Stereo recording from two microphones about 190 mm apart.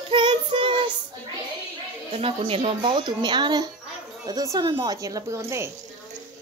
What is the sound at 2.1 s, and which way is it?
Speech, 30° right (ahead or behind).